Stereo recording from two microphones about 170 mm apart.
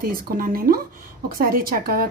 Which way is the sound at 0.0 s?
60° right (ahead or behind).